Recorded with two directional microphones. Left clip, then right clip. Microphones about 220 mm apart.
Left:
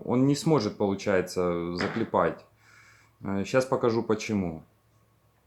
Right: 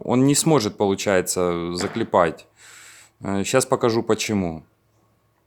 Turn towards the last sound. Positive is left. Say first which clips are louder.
# right 7 dB
turn(degrees=-45)  # may be behind; listen again after turning